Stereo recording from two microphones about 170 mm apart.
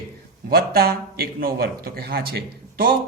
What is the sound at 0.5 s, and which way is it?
A man's voice, 65° right (ahead or behind).